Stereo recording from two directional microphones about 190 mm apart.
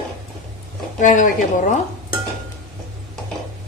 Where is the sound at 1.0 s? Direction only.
40° left (ahead or behind).